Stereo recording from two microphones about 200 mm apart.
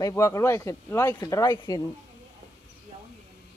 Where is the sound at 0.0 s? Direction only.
15° left (ahead or behind).